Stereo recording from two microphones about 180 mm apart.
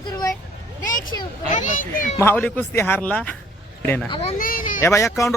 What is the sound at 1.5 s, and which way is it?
Speech, 45° left (ahead or behind).